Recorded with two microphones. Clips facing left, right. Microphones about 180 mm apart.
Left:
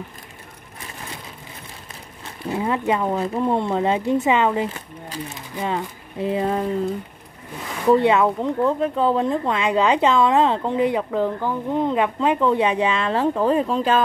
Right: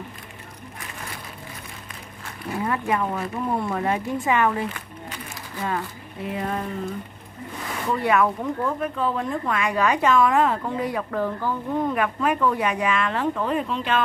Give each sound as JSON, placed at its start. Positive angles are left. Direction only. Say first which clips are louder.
{"t": 2.5, "sound": "speech", "louder": "left 3 dB", "side_deg": 20}
{"t": 7.9, "sound": "speech", "louder": "left 5 dB", "side_deg": 25}